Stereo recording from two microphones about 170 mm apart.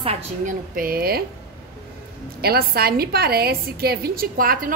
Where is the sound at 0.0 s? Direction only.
40° right (ahead or behind).